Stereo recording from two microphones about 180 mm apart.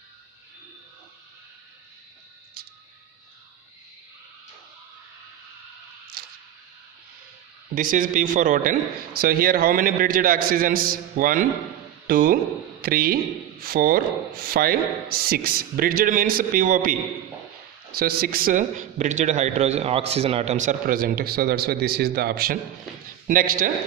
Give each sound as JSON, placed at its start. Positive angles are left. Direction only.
{"t": 2.6, "sound": "music", "side_deg": -60}
{"t": 6.2, "sound": "a sound", "side_deg": -55}
{"t": 7.7, "sound": "a man's voice", "side_deg": -50}
{"t": 17.9, "sound": "a man's voice", "side_deg": -55}